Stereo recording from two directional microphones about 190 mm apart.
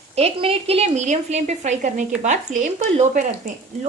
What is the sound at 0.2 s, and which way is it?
Speech, 30° right (ahead or behind).